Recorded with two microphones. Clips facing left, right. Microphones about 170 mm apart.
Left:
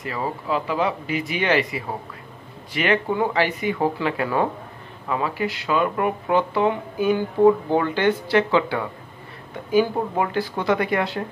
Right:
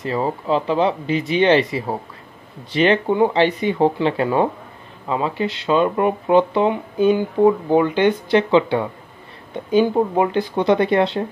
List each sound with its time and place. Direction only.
0.0 s speech: 25° right (ahead or behind)